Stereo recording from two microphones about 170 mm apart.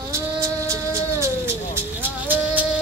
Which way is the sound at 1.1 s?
15° right (ahead or behind).